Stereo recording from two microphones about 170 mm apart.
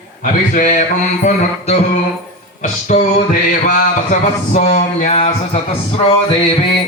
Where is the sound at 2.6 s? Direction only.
45° left (ahead or behind).